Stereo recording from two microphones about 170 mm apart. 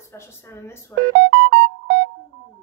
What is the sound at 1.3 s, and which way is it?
Music, 90° right.